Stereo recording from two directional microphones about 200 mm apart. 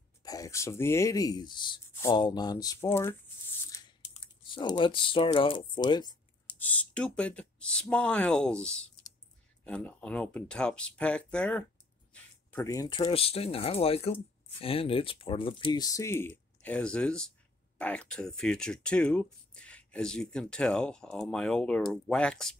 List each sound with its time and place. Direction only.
0.2 s speech: 15° left (ahead or behind)
4.1 s speech: 25° left (ahead or behind)
6.6 s speech: 5° left (ahead or behind)
12.1 s a sound: 5° left (ahead or behind)
12.5 s speech: 15° left (ahead or behind)